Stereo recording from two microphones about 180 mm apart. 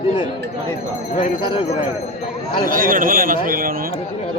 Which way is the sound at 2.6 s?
50° right (ahead or behind).